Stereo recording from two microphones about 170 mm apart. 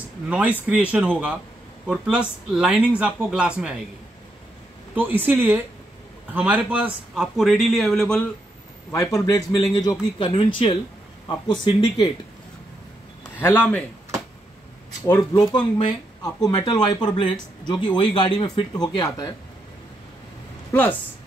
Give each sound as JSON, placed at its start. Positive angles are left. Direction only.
{"t": 0.3, "sound": "a man's voice", "side_deg": -10}
{"t": 4.9, "sound": "a man's voice", "side_deg": -10}
{"t": 8.9, "sound": "speech", "side_deg": 20}
{"t": 13.4, "sound": "speech", "side_deg": 10}
{"t": 15.3, "sound": "speech", "side_deg": 30}
{"t": 20.7, "sound": "speech", "side_deg": 10}